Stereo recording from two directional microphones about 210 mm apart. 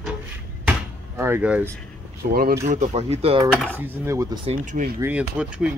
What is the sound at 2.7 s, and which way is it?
Speech, 35° right (ahead or behind).